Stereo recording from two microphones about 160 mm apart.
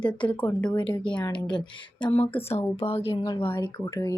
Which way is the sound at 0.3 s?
10° left (ahead or behind).